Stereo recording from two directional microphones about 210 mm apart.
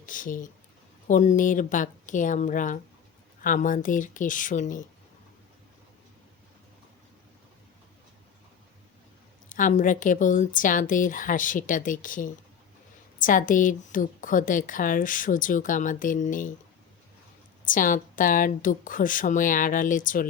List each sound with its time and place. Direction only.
0.0 s a woman's voice: 40° left (ahead or behind)
9.5 s a woman's voice: 40° left (ahead or behind)
17.7 s a woman's voice: 40° left (ahead or behind)